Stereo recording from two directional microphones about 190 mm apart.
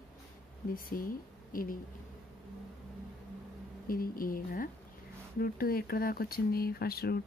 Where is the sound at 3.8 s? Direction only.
50° left (ahead or behind).